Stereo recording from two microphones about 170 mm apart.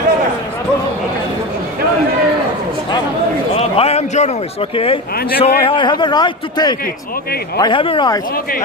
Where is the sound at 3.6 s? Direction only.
40° left (ahead or behind).